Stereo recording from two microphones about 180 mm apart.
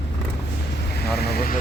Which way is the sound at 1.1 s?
60° left (ahead or behind).